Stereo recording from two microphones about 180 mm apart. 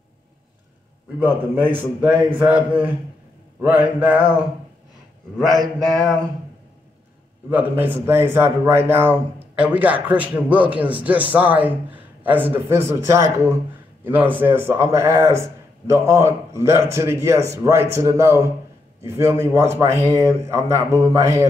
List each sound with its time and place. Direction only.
1.2 s a man's voice: 10° right (ahead or behind)
4.2 s speech: 25° left (ahead or behind)
5.5 s mantra: centre (ahead or behind)
7.4 s a man's voice: 10° right (ahead or behind)